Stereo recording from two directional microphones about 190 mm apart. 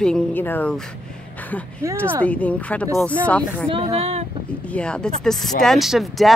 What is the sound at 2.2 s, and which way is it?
Speech, 5° left (ahead or behind).